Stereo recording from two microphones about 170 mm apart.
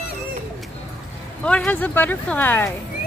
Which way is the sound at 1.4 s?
5° left (ahead or behind).